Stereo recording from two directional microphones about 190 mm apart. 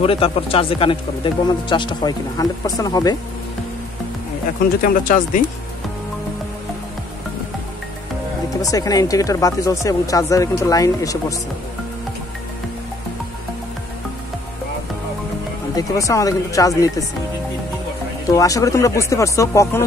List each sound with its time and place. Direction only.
0.0 s speech: 30° left (ahead or behind)
4.8 s speech: 45° left (ahead or behind)
8.5 s speech: 20° left (ahead or behind)
15.7 s speech: 15° left (ahead or behind)
18.3 s speech: 15° left (ahead or behind)